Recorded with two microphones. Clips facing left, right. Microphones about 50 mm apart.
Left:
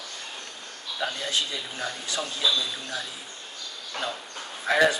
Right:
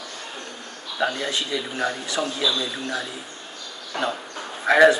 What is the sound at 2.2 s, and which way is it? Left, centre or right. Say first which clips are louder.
Speech: right 1 dB; centre.